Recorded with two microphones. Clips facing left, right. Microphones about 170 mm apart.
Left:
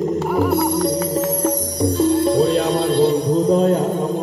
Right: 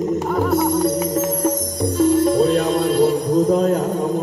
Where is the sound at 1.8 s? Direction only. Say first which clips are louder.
Even; 30° left (ahead or behind).